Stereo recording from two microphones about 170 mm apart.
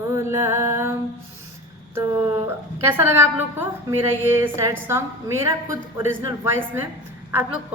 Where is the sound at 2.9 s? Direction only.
15° right (ahead or behind).